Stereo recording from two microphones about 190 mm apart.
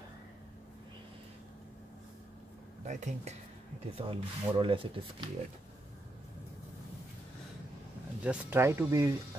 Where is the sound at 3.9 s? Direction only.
25° right (ahead or behind).